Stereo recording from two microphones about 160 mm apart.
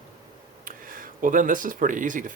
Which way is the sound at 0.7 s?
60° right (ahead or behind).